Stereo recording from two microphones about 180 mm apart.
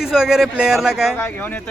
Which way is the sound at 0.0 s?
5° right (ahead or behind).